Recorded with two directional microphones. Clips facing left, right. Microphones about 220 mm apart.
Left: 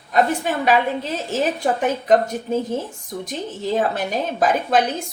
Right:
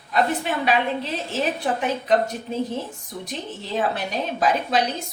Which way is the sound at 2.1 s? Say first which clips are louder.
Left 5 dB; 45° left (ahead or behind).